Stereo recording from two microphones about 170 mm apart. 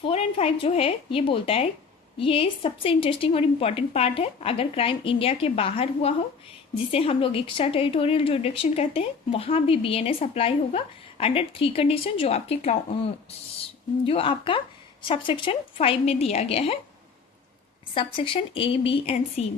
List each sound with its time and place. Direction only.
0.1 s a woman's voice: 35° left (ahead or behind)
14.1 s a woman's voice: 30° left (ahead or behind)
17.9 s a woman's voice: 30° left (ahead or behind)